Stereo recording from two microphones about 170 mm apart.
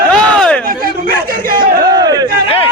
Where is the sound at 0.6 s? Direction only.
60° right (ahead or behind).